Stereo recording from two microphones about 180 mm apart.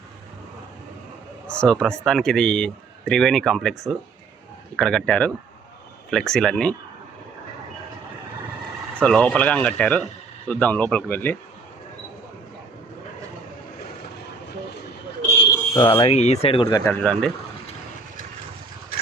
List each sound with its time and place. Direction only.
1.5 s speech: 5° left (ahead or behind)
9.0 s speech: 5° left (ahead or behind)
15.8 s speech: 25° left (ahead or behind)
16.6 s speech: 15° left (ahead or behind)